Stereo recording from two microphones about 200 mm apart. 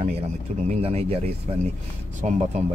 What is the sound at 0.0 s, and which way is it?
Speech, 30° right (ahead or behind).